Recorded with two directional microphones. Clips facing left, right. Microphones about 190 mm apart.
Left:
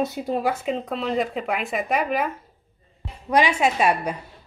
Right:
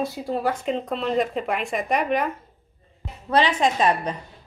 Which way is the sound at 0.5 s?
5° left (ahead or behind).